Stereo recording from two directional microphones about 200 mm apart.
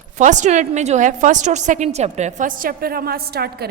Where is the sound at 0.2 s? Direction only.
35° right (ahead or behind).